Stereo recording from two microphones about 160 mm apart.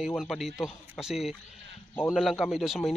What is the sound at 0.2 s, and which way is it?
A man's voice, centre (ahead or behind).